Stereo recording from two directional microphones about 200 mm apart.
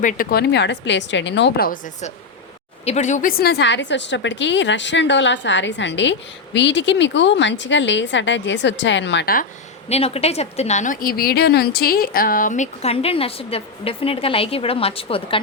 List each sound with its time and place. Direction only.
0.0 s a woman's voice: 40° left (ahead or behind)
9.9 s a woman's voice: 30° left (ahead or behind)